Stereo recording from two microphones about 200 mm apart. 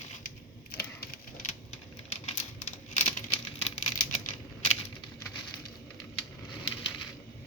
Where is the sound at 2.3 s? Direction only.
35° left (ahead or behind).